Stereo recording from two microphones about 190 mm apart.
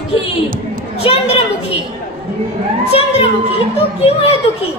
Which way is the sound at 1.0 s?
30° left (ahead or behind).